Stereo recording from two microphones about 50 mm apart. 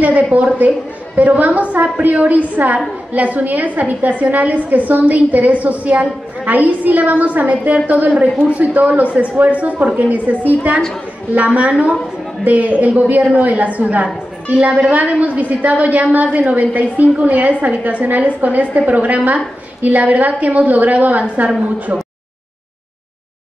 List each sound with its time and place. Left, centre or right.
0.0 s a woman's voice: right